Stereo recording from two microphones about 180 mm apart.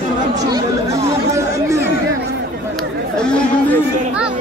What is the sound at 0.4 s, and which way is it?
Chatter, 20° right (ahead or behind).